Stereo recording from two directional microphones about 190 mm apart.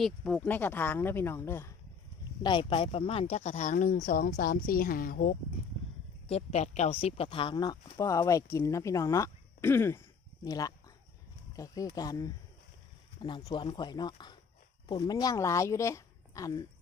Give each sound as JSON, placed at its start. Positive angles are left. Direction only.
{"t": 0.0, "sound": "speech", "side_deg": 5}
{"t": 2.4, "sound": "speech", "side_deg": 25}
{"t": 6.2, "sound": "speech", "side_deg": 35}